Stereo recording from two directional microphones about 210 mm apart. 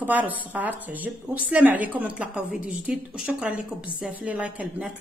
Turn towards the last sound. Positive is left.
turn(degrees=-5)  # may be behind; listen again after turning